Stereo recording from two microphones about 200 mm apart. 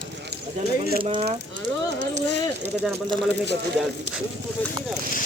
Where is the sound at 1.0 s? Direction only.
30° right (ahead or behind).